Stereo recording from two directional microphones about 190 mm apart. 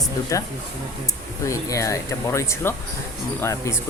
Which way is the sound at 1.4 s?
15° left (ahead or behind).